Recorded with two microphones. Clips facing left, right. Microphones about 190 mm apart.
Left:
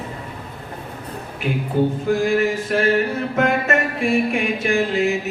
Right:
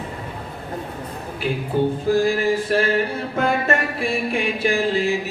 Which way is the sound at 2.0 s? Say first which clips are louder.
Even; 35° right (ahead or behind).